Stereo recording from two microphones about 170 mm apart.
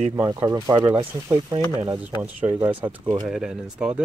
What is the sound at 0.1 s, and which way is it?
Speech, 25° right (ahead or behind).